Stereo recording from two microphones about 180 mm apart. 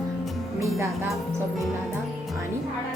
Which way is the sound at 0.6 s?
15° right (ahead or behind).